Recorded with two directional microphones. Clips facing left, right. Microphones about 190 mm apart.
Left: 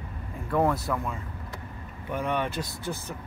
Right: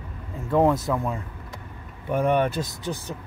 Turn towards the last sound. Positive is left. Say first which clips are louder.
# right 3 dB
turn(degrees=-20)  # may be behind; listen again after turning